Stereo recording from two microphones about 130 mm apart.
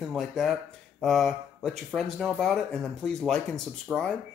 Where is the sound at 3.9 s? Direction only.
10° right (ahead or behind).